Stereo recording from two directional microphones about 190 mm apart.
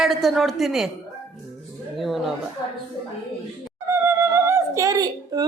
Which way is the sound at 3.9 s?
15° right (ahead or behind).